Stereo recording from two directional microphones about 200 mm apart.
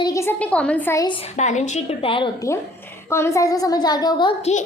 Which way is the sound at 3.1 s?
15° left (ahead or behind).